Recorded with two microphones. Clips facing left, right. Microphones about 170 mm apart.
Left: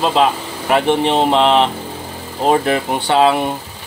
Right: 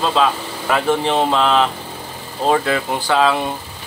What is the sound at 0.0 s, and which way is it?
Speech, 20° left (ahead or behind).